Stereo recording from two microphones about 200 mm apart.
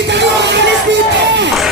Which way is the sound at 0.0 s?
60° right (ahead or behind).